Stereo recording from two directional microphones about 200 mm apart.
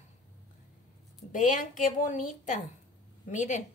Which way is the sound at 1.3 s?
40° left (ahead or behind).